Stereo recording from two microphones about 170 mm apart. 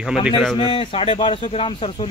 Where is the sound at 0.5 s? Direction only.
30° left (ahead or behind).